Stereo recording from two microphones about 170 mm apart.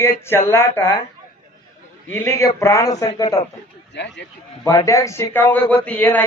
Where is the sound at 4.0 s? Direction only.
90° left.